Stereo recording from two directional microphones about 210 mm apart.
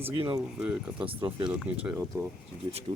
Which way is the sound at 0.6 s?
5° right (ahead or behind).